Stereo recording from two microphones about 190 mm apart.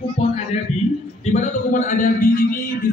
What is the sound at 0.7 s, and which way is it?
Speech, centre (ahead or behind).